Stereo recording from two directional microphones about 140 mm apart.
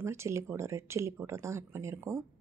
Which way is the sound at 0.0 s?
20° right (ahead or behind).